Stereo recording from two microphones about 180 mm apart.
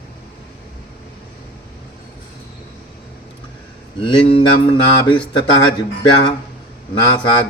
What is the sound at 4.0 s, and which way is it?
A man's voice, 30° left (ahead or behind).